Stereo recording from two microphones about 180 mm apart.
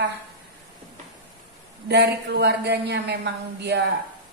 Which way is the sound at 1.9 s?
65° right (ahead or behind).